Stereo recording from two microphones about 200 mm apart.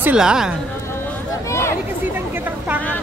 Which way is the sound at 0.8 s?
10° left (ahead or behind).